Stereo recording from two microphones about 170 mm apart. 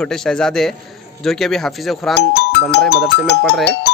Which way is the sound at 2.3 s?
80° left.